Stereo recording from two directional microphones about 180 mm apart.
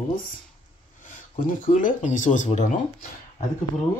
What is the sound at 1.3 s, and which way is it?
Speech, 45° left (ahead or behind).